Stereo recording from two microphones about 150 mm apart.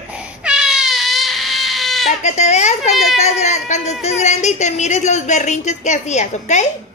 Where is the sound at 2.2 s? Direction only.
50° left (ahead or behind).